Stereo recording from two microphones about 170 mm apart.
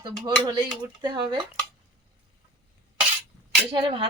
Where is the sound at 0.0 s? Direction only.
25° right (ahead or behind).